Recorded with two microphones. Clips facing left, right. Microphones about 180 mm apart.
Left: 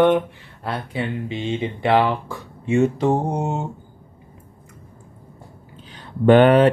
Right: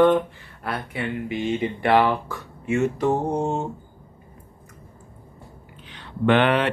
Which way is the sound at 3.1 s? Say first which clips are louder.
Left 1 dB; 15° left (ahead or behind).